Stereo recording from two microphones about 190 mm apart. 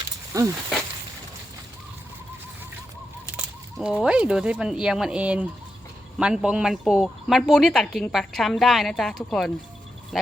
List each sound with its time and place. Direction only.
0.3 s speech: 15° right (ahead or behind)
3.3 s speech: 5° right (ahead or behind)